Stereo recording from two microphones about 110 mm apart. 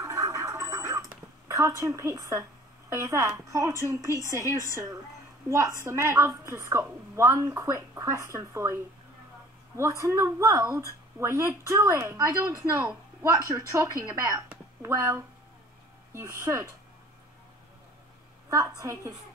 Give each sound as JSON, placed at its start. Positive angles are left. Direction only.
{"t": 0.0, "sound": "a sound", "side_deg": -30}
{"t": 2.9, "sound": "a woman's voice", "side_deg": -30}
{"t": 4.1, "sound": "a woman's voice", "side_deg": 30}
{"t": 4.7, "sound": "a woman's voice", "side_deg": -30}
{"t": 9.8, "sound": "a woman's voice", "side_deg": -25}
{"t": 18.5, "sound": "a woman's voice", "side_deg": -30}